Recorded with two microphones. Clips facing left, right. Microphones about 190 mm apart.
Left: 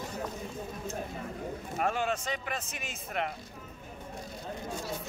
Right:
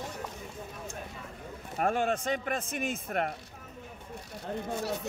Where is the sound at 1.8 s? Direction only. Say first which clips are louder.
Right 3 dB; 55° right (ahead or behind).